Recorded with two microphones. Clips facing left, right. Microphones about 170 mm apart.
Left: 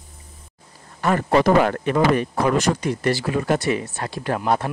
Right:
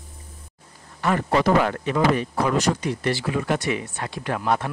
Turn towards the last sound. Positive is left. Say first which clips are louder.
# left 2 dB
turn(degrees=35)  # may be behind; listen again after turning